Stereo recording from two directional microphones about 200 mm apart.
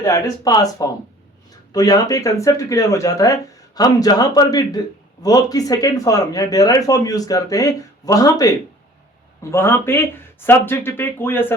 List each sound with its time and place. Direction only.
0.0 s speech: 20° left (ahead or behind)